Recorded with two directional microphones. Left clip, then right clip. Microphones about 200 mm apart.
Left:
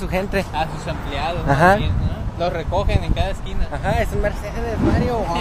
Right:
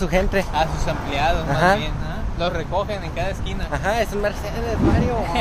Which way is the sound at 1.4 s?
35° left (ahead or behind).